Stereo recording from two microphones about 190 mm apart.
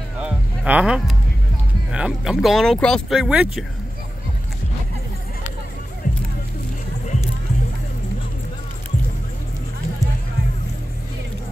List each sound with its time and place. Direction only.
0.2 s a sound: 5° right (ahead or behind)
1.9 s speech: 5° right (ahead or behind)
6.0 s music: 40° left (ahead or behind)